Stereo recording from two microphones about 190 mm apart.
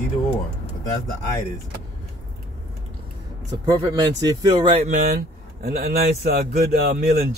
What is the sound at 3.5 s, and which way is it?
Speech, 20° right (ahead or behind).